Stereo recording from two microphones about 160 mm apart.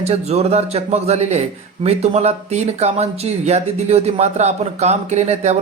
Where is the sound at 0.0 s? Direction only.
40° right (ahead or behind).